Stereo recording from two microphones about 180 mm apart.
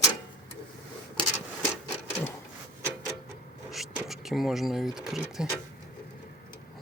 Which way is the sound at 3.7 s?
Centre (ahead or behind).